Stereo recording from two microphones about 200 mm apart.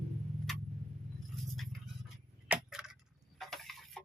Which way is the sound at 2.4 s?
5° right (ahead or behind).